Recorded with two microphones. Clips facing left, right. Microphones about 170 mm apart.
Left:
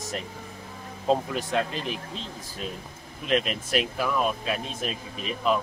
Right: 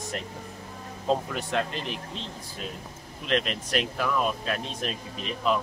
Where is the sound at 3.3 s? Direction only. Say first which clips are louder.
Left 2 dB; 5° left (ahead or behind).